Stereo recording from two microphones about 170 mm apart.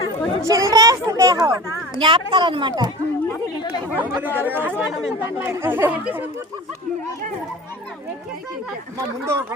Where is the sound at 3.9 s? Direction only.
10° right (ahead or behind).